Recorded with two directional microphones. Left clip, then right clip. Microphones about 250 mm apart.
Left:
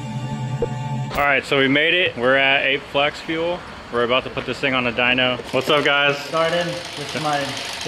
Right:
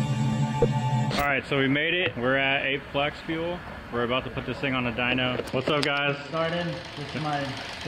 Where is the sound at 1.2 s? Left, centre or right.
Centre.